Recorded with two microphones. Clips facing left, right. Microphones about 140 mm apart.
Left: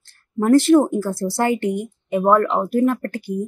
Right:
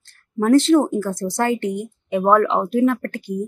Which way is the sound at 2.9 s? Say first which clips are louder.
Even; 10° left (ahead or behind).